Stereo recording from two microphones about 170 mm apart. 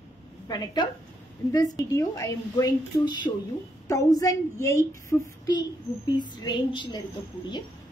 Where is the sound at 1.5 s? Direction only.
20° left (ahead or behind).